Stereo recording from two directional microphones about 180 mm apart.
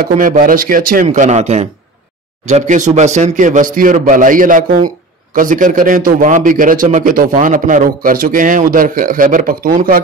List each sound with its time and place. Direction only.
0.0 s a man's voice: 45° right (ahead or behind)